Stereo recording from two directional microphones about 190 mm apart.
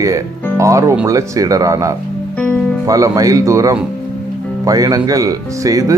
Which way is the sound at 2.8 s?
15° right (ahead or behind).